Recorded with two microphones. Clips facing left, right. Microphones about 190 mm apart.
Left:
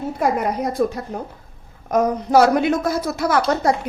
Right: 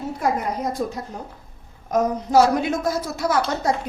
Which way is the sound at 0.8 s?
65° left (ahead or behind).